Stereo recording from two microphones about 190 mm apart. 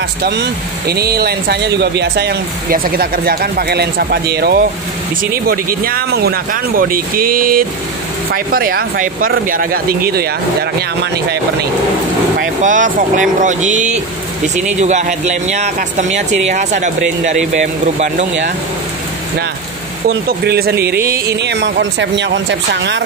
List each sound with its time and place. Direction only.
0.2 s speech: 60° right (ahead or behind)
12.4 s speech: 40° right (ahead or behind)
20.1 s speech: 55° right (ahead or behind)